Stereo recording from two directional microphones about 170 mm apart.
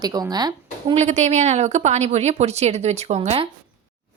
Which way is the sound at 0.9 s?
40° right (ahead or behind).